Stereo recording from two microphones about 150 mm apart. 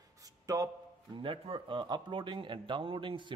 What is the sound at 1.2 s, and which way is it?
Speech, 35° right (ahead or behind).